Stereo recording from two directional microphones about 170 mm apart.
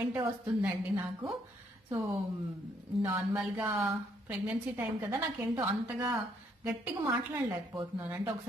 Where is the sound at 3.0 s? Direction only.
10° right (ahead or behind).